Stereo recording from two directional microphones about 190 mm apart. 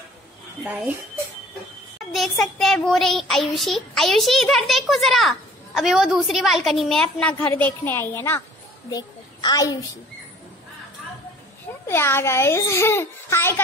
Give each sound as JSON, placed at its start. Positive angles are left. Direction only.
{"t": 2.1, "sound": "a child's voice", "side_deg": 0}
{"t": 11.8, "sound": "a child's voice", "side_deg": 15}